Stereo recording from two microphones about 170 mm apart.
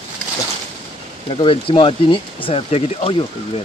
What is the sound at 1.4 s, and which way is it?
Speech, 30° left (ahead or behind).